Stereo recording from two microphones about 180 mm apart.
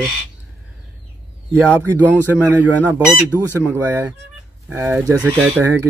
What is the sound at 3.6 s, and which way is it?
Speech, 10° right (ahead or behind).